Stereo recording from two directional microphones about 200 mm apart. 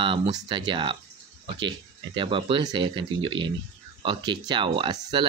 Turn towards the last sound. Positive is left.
turn(degrees=-25)  # may be behind; listen again after turning